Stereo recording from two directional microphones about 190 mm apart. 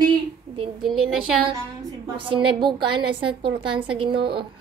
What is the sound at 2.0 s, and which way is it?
A woman's voice, 25° right (ahead or behind).